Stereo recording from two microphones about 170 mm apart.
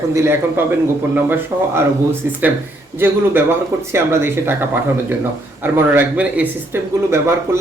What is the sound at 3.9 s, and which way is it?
Speech, 15° right (ahead or behind).